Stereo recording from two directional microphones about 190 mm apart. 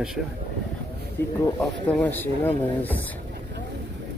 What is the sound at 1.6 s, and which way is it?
Speech, 5° left (ahead or behind).